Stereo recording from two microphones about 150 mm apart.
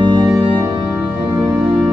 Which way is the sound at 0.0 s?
30° right (ahead or behind).